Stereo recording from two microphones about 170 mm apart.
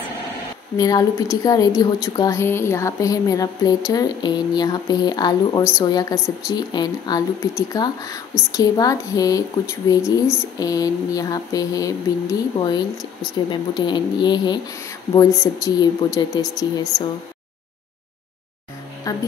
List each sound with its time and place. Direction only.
0.7 s speech: 20° left (ahead or behind)
19.1 s a woman's voice: 20° left (ahead or behind)